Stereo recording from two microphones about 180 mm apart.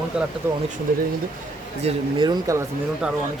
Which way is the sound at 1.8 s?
25° right (ahead or behind).